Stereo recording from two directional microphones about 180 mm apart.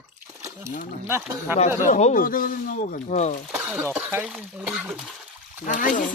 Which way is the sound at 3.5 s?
5° right (ahead or behind).